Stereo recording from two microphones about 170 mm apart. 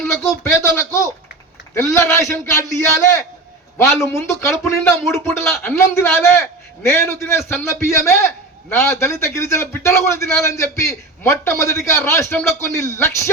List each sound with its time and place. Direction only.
0.0 s a sound: 15° left (ahead or behind)
1.7 s a man's voice: 15° left (ahead or behind)
4.0 s a man's voice: 15° left (ahead or behind)